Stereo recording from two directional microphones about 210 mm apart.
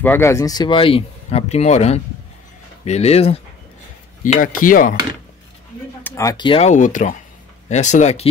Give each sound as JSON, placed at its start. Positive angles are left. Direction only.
{"t": 0.0, "sound": "speech", "side_deg": 10}
{"t": 6.0, "sound": "speech", "side_deg": 15}